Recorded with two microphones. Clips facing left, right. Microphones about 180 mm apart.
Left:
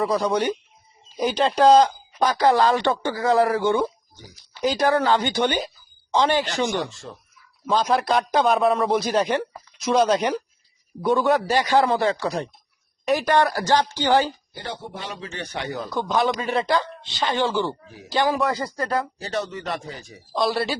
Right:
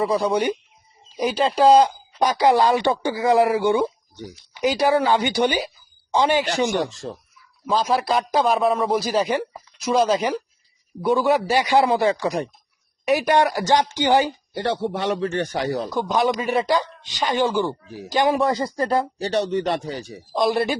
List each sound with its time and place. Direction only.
0.0 s speech: 5° right (ahead or behind)
6.9 s speech: 40° right (ahead or behind)
7.7 s a man's voice: centre (ahead or behind)
14.5 s a man's voice: 75° right (ahead or behind); by 15.9 s 35° right (ahead or behind)
16.0 s speech: 15° right (ahead or behind)
18.3 s speech: 25° right (ahead or behind)
20.3 s speech: 20° right (ahead or behind)